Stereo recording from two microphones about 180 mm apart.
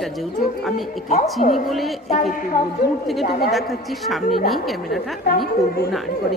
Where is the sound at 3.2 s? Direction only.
60° left (ahead or behind).